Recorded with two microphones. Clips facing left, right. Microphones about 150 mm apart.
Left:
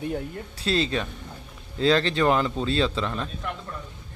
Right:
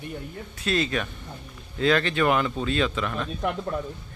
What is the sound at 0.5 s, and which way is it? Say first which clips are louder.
Speech: left 1 dB; 30° left (ahead or behind).